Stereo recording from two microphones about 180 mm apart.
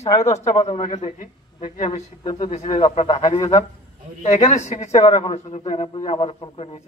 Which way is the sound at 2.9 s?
35° left (ahead or behind).